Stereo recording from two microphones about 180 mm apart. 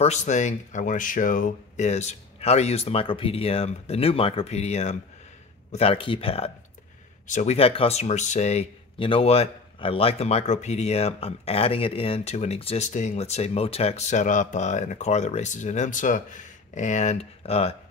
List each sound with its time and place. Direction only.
0.0 s speech: 40° left (ahead or behind)